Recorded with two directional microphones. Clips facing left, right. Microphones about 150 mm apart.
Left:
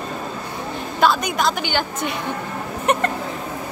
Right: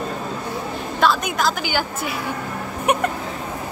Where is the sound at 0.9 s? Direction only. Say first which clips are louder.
Left 1 dB; centre (ahead or behind).